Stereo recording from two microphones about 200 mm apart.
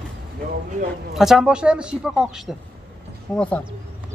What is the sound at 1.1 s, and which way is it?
Speech, centre (ahead or behind).